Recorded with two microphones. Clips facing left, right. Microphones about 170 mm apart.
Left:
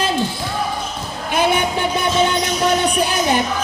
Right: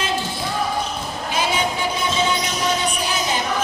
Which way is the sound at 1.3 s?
60° left (ahead or behind).